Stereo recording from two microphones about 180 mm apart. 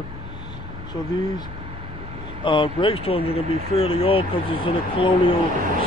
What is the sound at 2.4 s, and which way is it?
Speech, 30° left (ahead or behind).